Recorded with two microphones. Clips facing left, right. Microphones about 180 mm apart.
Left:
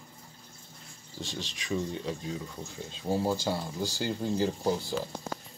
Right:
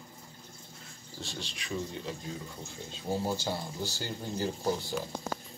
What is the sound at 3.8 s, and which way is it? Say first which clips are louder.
Speech: left 6 dB; 15° left (ahead or behind).